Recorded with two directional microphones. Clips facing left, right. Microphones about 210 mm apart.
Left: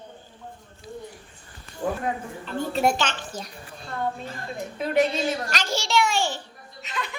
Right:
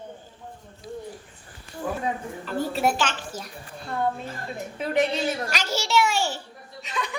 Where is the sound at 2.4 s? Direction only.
5° right (ahead or behind).